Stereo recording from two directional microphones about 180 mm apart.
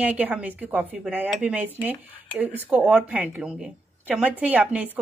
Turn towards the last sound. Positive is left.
turn(degrees=-10)  # may be behind; listen again after turning